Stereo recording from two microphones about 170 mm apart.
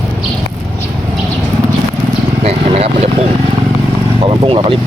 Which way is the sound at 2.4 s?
35° right (ahead or behind).